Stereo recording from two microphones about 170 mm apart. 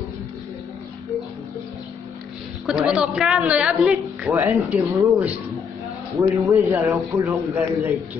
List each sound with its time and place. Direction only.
2.6 s a woman's voice: 5° right (ahead or behind)